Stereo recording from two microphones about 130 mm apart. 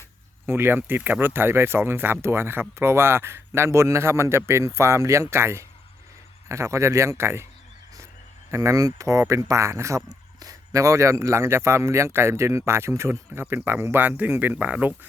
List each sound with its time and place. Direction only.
0.4 s speech: 20° right (ahead or behind)
8.4 s speech: 20° right (ahead or behind)